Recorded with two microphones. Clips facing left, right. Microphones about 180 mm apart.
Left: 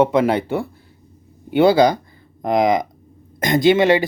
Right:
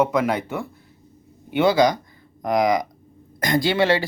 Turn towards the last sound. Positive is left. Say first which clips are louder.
# left 5 dB
turn(degrees=20)  # may be behind; listen again after turning